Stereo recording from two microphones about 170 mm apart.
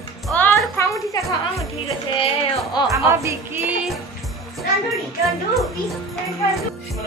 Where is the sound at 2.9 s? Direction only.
15° right (ahead or behind).